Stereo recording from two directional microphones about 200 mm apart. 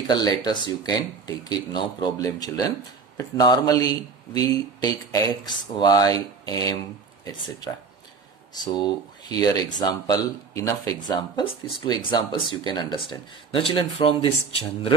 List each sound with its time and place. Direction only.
0.1 s speech: 20° left (ahead or behind)
8.7 s speech: 20° left (ahead or behind)